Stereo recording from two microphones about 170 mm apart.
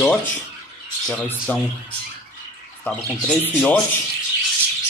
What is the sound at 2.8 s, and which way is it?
Speech, 5° left (ahead or behind).